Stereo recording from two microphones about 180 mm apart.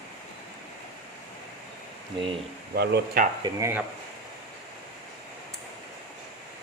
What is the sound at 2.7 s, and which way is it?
Speech, 60° right (ahead or behind).